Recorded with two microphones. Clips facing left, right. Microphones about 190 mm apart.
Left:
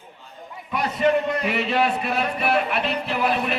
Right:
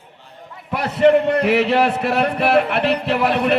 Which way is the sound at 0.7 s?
75° right (ahead or behind).